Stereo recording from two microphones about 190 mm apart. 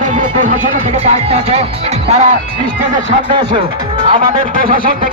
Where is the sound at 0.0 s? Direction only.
45° right (ahead or behind).